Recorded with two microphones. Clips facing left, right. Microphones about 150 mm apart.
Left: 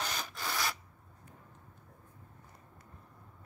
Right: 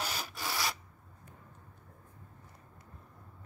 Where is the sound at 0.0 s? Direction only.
10° right (ahead or behind).